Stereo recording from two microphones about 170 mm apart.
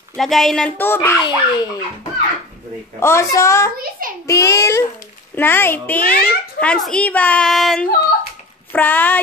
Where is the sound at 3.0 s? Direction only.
15° left (ahead or behind).